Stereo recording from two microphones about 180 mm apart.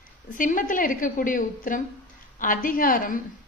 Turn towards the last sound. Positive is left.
turn(degrees=50)  # may be behind; listen again after turning